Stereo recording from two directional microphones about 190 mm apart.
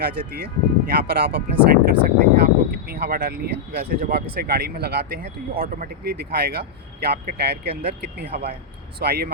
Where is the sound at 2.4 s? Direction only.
55° right (ahead or behind).